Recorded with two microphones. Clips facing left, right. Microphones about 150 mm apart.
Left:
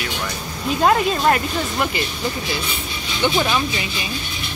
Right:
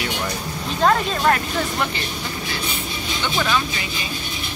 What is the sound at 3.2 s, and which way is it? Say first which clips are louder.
Speech: left 3 dB; 20° left (ahead or behind).